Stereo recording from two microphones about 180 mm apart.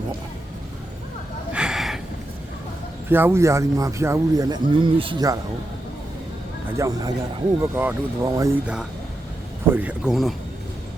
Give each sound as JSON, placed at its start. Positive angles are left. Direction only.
{"t": 1.5, "sound": "a sound", "side_deg": -5}
{"t": 3.1, "sound": "speech", "side_deg": -10}
{"t": 6.7, "sound": "speech", "side_deg": -20}